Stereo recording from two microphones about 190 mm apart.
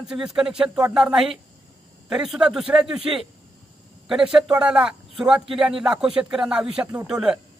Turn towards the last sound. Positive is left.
turn(degrees=-5)  # may be behind; listen again after turning